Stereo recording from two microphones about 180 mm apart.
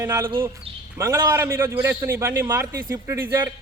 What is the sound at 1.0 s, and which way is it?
A man's voice, 15° right (ahead or behind).